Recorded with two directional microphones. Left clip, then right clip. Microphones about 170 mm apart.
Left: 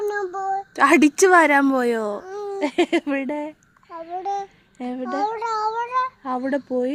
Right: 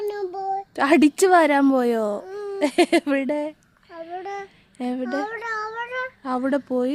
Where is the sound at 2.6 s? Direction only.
35° right (ahead or behind).